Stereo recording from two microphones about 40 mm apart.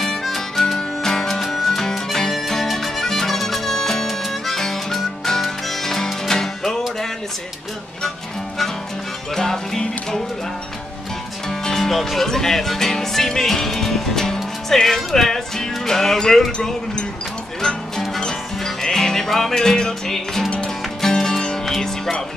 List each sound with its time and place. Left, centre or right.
0.0 s harmonica: centre
1.0 s music: centre
9.3 s music: centre
11.4 s music: centre
11.9 s music: centre
17.6 s music: centre
20.4 s music: left; by 22.1 s centre